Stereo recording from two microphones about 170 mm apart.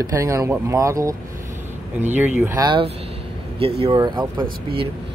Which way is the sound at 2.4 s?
20° right (ahead or behind).